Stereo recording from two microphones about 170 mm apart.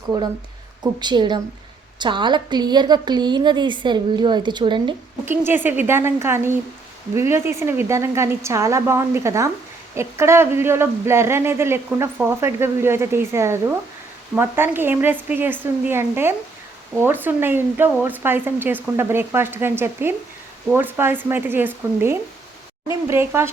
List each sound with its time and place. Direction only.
0.1 s a woman's voice: 25° right (ahead or behind)
5.2 s speech: 15° right (ahead or behind)